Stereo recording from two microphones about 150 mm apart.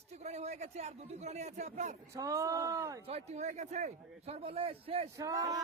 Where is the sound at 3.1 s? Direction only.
45° right (ahead or behind).